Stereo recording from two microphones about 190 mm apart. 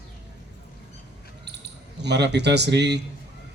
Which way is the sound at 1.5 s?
65° right (ahead or behind).